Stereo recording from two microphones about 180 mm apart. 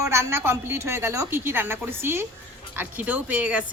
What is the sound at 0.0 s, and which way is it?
Speech, 15° right (ahead or behind).